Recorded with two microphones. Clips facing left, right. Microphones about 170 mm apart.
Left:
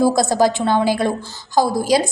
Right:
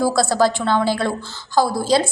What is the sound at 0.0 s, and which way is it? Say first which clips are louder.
A woman's voice: left 2 dB; 20° left (ahead or behind).